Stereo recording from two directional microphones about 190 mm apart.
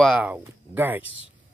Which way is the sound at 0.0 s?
5° right (ahead or behind).